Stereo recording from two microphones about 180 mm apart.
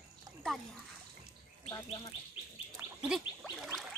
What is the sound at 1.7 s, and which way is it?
Speech, 25° left (ahead or behind).